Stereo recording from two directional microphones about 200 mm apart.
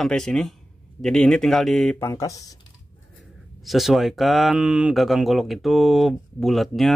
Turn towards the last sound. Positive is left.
turn(degrees=0)  # may be behind; listen again after turning